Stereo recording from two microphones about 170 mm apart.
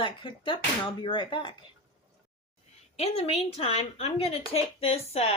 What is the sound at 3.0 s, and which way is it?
A woman's voice, 35° left (ahead or behind).